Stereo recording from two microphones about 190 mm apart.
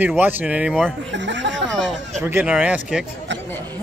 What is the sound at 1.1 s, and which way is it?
Speech, 70° right (ahead or behind).